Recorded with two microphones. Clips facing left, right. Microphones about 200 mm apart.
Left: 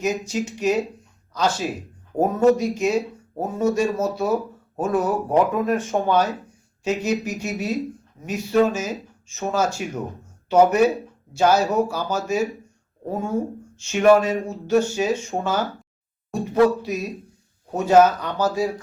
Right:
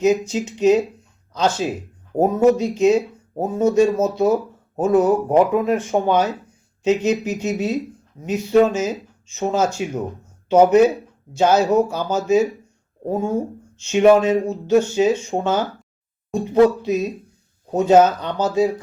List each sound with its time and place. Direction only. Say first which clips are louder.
0.0 s speech: right 6 dB; 20° right (ahead or behind)
13.7 s speech: right 2 dB; 20° right (ahead or behind)